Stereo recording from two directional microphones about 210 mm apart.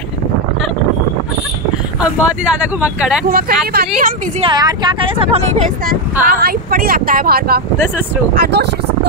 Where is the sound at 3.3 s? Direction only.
45° right (ahead or behind).